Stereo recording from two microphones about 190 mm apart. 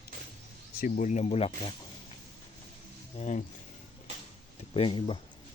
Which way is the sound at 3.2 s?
40° left (ahead or behind).